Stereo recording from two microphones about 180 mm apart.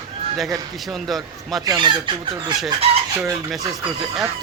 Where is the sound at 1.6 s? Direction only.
25° right (ahead or behind).